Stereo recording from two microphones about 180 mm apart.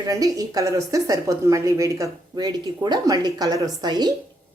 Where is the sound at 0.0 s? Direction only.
20° right (ahead or behind).